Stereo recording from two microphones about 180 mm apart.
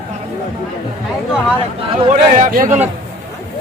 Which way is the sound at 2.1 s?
50° right (ahead or behind).